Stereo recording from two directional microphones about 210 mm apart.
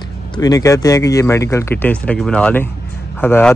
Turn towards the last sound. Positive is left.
turn(degrees=10)  # may be behind; listen again after turning